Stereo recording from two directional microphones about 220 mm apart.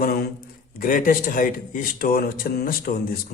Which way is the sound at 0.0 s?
40° left (ahead or behind).